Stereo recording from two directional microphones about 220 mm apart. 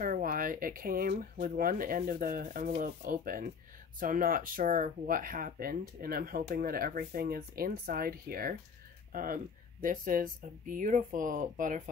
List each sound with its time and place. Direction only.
0.0 s speech: 40° right (ahead or behind)